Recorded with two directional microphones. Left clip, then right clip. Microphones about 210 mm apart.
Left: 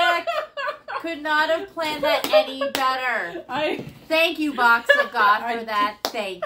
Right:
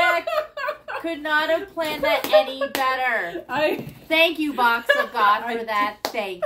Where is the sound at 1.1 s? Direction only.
15° left (ahead or behind).